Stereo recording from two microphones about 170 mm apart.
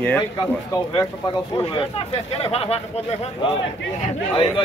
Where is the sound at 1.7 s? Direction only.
35° left (ahead or behind).